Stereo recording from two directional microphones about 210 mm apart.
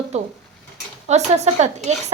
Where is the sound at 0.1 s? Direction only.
30° right (ahead or behind).